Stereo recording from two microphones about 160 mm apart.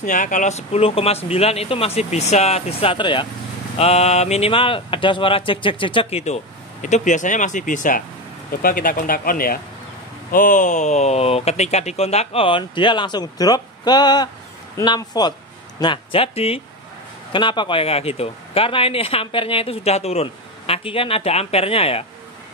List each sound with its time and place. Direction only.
0.0 s speech: 50° left (ahead or behind)
10.3 s speech: 55° left (ahead or behind); by 22.0 s 35° left (ahead or behind)